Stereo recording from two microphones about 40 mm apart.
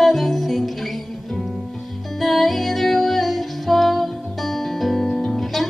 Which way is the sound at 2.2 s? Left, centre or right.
Centre.